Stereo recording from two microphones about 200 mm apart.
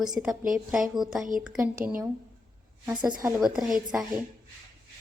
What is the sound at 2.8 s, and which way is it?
Speech, 20° right (ahead or behind).